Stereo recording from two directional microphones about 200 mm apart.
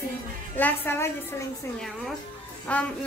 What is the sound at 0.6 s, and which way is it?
Speech, 10° left (ahead or behind).